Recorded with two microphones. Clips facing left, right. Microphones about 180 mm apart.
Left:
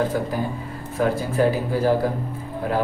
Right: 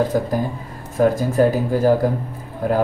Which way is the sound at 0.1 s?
40° right (ahead or behind).